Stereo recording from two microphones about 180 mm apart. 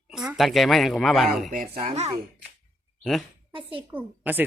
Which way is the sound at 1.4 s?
50° right (ahead or behind).